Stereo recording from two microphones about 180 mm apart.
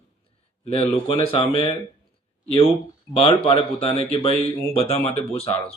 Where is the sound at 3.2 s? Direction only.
30° left (ahead or behind).